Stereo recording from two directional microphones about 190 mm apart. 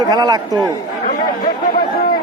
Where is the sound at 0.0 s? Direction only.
20° right (ahead or behind).